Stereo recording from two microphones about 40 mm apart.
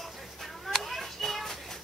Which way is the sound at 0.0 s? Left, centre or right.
Centre.